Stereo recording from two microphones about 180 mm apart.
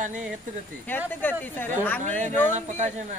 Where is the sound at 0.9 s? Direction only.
10° left (ahead or behind).